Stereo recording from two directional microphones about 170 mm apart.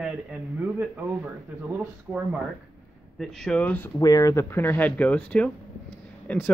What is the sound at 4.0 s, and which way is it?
Speech, 20° left (ahead or behind).